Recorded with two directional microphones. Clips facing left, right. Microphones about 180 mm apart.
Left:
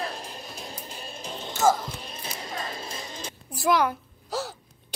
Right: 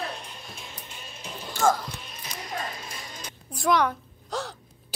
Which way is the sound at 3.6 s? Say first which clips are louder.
Even; 5° left (ahead or behind).